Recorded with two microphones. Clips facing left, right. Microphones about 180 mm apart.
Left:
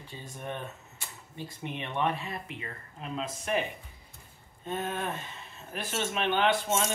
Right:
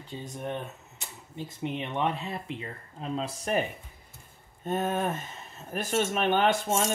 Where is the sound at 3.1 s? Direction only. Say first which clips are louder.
Right 2 dB; 35° right (ahead or behind).